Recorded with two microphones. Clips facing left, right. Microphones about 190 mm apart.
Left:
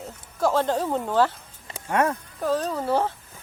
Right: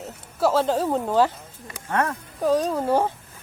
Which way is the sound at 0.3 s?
5° right (ahead or behind).